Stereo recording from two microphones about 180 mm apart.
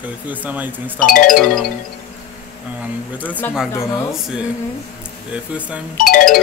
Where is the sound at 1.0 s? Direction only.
50° left (ahead or behind).